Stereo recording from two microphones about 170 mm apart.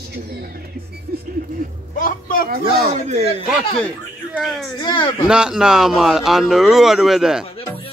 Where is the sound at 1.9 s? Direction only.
55° left (ahead or behind).